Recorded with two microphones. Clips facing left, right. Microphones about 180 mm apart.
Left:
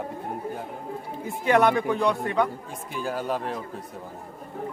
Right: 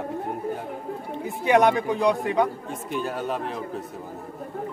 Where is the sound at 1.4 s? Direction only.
15° right (ahead or behind).